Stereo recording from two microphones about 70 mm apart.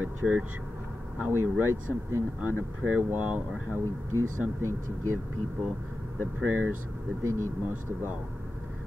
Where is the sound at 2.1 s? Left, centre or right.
Right.